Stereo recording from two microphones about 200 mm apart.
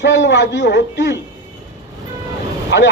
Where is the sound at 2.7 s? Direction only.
60° left (ahead or behind).